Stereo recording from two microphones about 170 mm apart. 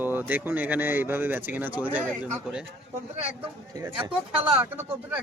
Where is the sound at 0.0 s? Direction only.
10° right (ahead or behind).